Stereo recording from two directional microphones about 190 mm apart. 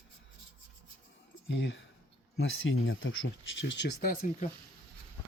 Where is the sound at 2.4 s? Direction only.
90° left; by 4.1 s 65° left (ahead or behind).